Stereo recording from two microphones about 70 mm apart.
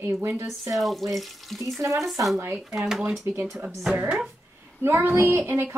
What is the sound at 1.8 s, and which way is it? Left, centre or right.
Speech, right.